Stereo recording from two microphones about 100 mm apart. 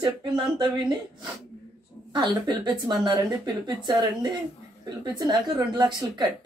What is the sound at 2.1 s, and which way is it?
A woman's voice, 45° right (ahead or behind).